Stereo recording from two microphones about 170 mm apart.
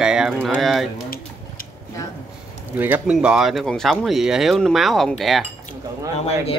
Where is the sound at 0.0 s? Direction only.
5° right (ahead or behind).